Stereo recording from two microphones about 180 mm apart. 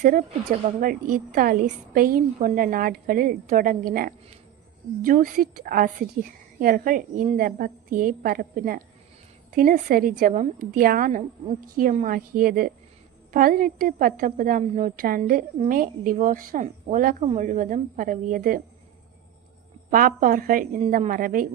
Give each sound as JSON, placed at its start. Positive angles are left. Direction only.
{"t": 0.0, "sound": "a woman's voice", "side_deg": -50}
{"t": 19.9, "sound": "a woman's voice", "side_deg": -50}